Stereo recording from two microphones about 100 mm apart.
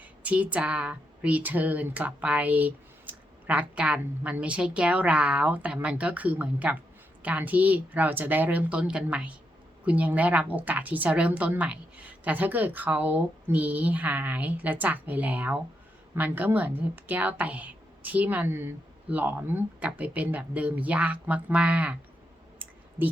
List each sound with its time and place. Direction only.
0.0 s speech: 15° right (ahead or behind)
23.0 s speech: 20° right (ahead or behind)